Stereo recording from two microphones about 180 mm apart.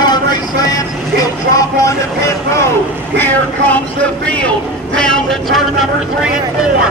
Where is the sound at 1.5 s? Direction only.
20° left (ahead or behind).